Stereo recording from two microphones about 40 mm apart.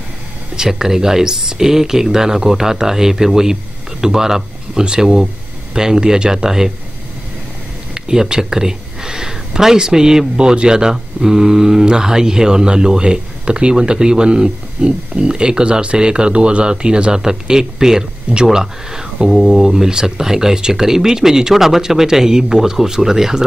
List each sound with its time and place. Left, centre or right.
0.6 s speech: centre
7.9 s speech: centre